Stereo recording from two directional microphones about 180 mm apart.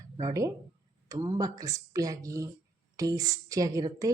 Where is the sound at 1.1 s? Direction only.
20° right (ahead or behind).